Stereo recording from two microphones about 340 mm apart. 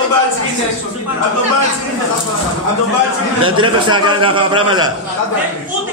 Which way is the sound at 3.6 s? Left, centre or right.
Centre.